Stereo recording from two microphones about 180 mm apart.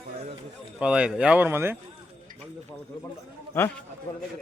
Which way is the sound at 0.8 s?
5° right (ahead or behind).